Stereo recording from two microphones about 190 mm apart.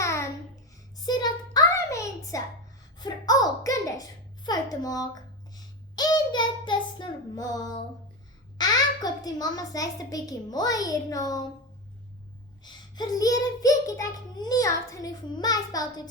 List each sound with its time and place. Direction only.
0.0 s babbling: 15° left (ahead or behind)
0.9 s a sound: 20° left (ahead or behind)
8.5 s a child's voice: 20° left (ahead or behind)
12.6 s a child's voice: 20° left (ahead or behind)